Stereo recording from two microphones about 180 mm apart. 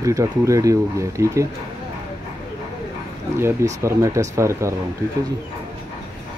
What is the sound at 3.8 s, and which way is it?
Speech, 15° right (ahead or behind).